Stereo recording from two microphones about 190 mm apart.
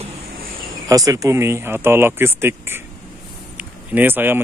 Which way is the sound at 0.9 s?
20° right (ahead or behind).